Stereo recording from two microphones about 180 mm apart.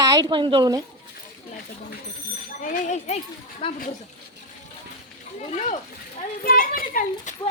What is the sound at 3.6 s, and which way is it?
Speech, 30° left (ahead or behind).